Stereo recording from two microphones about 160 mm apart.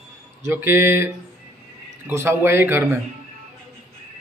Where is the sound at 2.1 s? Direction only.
15° right (ahead or behind).